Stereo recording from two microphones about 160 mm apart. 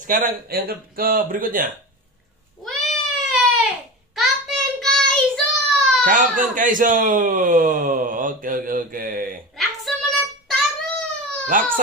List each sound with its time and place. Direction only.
0.0 s speech: 55° right (ahead or behind)
2.6 s cat: centre (ahead or behind)
4.1 s child singing: centre (ahead or behind)
6.0 s speech: 55° right (ahead or behind)
9.6 s child singing: centre (ahead or behind)
11.4 s speech: 60° right (ahead or behind)